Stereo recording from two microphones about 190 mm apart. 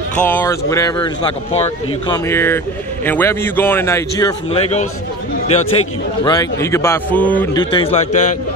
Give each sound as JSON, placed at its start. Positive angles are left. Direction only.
{"t": 0.1, "sound": "speech", "side_deg": 10}
{"t": 2.2, "sound": "speech", "side_deg": 10}
{"t": 4.5, "sound": "a man's voice", "side_deg": 35}
{"t": 6.2, "sound": "speech", "side_deg": 15}
{"t": 7.5, "sound": "a man's voice", "side_deg": 25}